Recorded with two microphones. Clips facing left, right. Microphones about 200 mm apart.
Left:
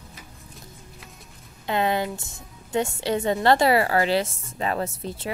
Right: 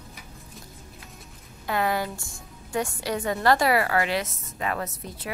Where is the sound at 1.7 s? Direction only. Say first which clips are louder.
Left 2 dB; 20° left (ahead or behind).